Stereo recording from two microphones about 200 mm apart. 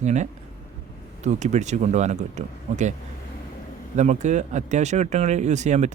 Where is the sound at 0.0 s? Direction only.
35° right (ahead or behind).